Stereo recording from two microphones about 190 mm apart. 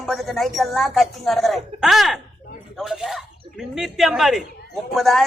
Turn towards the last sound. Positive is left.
turn(degrees=0)  # may be behind; listen again after turning